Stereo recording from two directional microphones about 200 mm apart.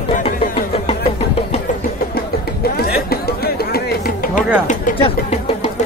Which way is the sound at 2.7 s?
50° left (ahead or behind).